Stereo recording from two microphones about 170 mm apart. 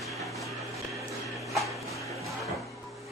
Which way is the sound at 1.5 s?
Centre (ahead or behind).